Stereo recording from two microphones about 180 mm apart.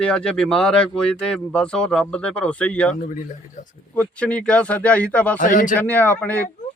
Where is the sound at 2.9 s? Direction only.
45° left (ahead or behind).